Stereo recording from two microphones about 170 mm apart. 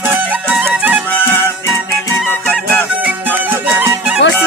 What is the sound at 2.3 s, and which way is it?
Music, 10° left (ahead or behind).